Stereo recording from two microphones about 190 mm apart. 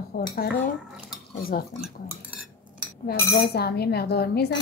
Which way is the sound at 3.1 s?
55° left (ahead or behind).